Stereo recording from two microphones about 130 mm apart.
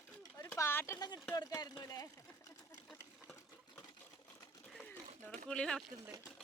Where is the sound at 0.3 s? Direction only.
20° left (ahead or behind).